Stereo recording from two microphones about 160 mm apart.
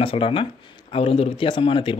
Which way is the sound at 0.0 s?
35° left (ahead or behind).